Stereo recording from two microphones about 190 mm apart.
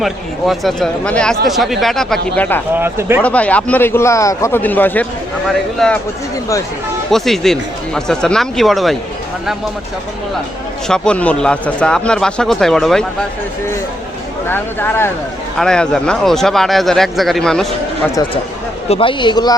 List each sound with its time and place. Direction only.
0.0 s speech: centre (ahead or behind)
2.7 s speech: 10° right (ahead or behind)
3.2 s a man's voice: 5° left (ahead or behind)
7.1 s speech: centre (ahead or behind)
10.8 s speech: 5° left (ahead or behind)
14.4 s a man's voice: 10° left (ahead or behind)
18.9 s speech: 25° left (ahead or behind)